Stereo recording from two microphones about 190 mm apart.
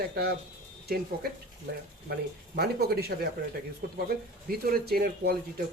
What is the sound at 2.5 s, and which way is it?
Speech, 55° right (ahead or behind).